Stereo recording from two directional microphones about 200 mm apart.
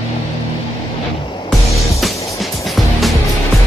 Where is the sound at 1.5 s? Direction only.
Centre (ahead or behind).